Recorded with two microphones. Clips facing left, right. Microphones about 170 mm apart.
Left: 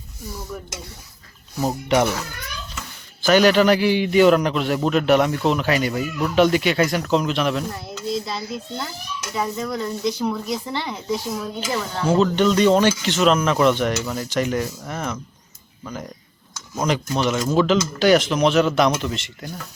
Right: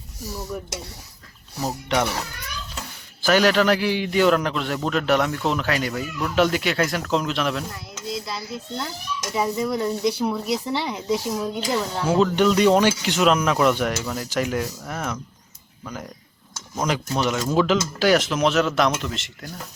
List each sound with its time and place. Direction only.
0.5 s speech: 10° right (ahead or behind)
1.6 s speech: 10° left (ahead or behind)
3.2 s speech: centre (ahead or behind)
7.9 s a sound: 25° left (ahead or behind)
9.3 s speech: 10° right (ahead or behind)